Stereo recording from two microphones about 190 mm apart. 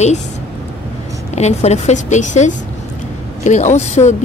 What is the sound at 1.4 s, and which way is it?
Speech, 35° left (ahead or behind).